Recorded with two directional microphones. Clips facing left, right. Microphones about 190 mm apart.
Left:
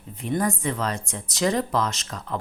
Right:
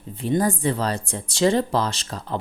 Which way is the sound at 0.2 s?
30° right (ahead or behind).